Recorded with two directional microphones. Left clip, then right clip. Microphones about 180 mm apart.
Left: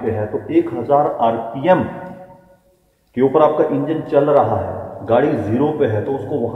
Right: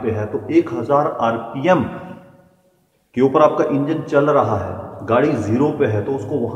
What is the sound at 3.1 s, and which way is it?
A man's voice, 5° right (ahead or behind).